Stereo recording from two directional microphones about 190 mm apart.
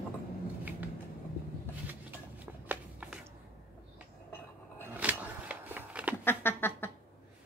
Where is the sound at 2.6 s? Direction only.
5° right (ahead or behind).